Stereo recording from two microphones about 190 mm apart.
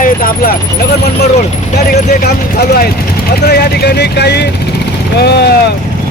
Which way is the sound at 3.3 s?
60° left (ahead or behind).